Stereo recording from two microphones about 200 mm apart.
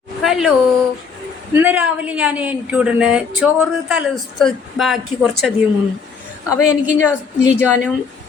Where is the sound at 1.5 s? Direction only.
10° right (ahead or behind).